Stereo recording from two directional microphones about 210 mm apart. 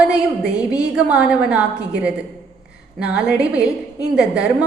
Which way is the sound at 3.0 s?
5° right (ahead or behind).